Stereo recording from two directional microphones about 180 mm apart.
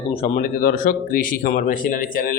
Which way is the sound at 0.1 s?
35° left (ahead or behind).